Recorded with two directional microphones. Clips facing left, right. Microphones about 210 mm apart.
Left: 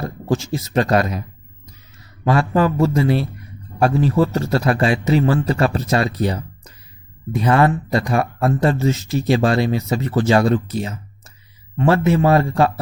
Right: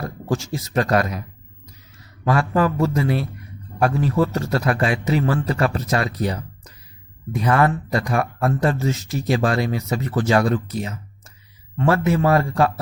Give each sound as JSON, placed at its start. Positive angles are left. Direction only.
{"t": 0.0, "sound": "speech", "side_deg": 25}
{"t": 2.2, "sound": "speech", "side_deg": 25}